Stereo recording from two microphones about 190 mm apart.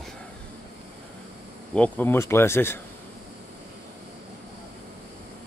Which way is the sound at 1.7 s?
10° left (ahead or behind).